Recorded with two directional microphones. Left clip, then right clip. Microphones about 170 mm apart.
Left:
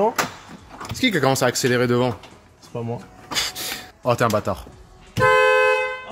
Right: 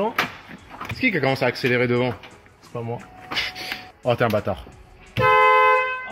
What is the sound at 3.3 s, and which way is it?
Printer, 15° left (ahead or behind).